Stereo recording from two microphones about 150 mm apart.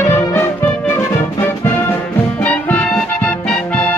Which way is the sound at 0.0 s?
15° left (ahead or behind).